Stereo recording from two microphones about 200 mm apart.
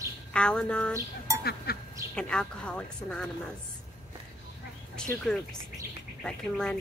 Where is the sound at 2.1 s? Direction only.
5° left (ahead or behind).